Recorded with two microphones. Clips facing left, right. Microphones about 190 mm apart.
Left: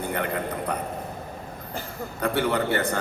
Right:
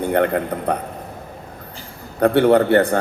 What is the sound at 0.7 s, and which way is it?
Speech, 60° right (ahead or behind).